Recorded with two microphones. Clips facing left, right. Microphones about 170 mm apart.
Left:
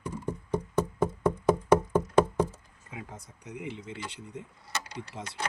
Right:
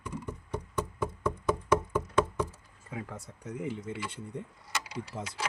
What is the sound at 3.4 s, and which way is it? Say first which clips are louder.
Speech: right 3 dB; 40° right (ahead or behind).